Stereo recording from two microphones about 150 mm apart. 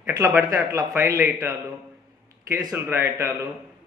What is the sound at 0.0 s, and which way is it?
A man's voice, 20° right (ahead or behind).